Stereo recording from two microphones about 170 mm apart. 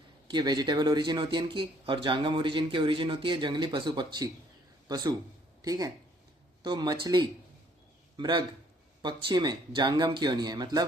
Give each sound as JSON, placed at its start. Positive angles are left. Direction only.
{"t": 0.3, "sound": "a man's voice", "side_deg": -25}